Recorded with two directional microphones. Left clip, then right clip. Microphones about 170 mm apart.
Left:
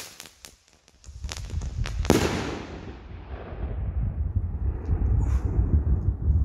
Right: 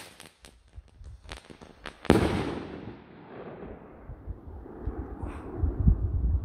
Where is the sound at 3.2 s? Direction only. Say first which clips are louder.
Left 1 dB; 30° right (ahead or behind).